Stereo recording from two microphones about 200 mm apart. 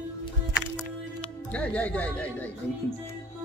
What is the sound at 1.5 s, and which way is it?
Speech, 5° left (ahead or behind).